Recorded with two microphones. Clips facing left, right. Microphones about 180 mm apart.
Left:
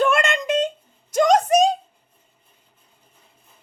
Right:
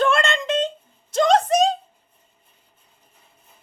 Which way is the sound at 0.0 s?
10° left (ahead or behind).